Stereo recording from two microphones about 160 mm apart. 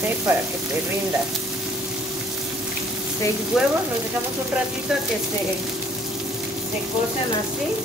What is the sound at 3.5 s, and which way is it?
Frying, 5° right (ahead or behind).